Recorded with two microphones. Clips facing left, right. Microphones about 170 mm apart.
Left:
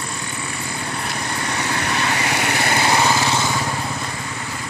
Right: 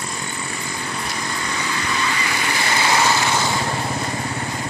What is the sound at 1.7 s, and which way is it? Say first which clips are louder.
Vehicle: left 2 dB; 70° left (ahead or behind).